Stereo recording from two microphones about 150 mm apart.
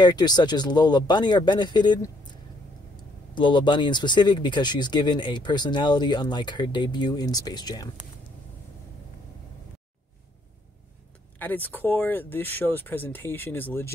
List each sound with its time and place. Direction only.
0.0 s speech: 30° left (ahead or behind)
3.3 s speech: 30° left (ahead or behind)
11.3 s speech: 10° left (ahead or behind)